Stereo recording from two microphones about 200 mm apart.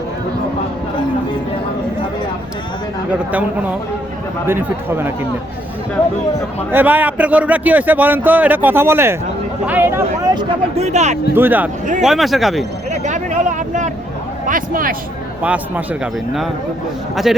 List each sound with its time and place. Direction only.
4.4 s a man's voice: 10° right (ahead or behind)
6.7 s a man's voice: 10° right (ahead or behind)
10.3 s speech: 35° right (ahead or behind)
11.3 s a man's voice: 10° right (ahead or behind)
12.9 s a man's voice: 35° right (ahead or behind)
15.4 s a man's voice: 10° right (ahead or behind)